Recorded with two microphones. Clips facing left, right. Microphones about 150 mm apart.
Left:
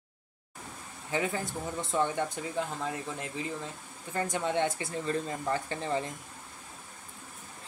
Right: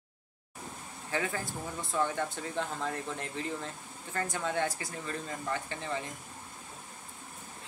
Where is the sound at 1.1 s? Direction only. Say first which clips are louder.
Left 3 dB; 20° left (ahead or behind).